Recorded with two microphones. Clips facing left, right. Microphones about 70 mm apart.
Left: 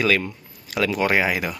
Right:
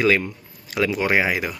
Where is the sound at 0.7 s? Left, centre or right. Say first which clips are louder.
Even; centre.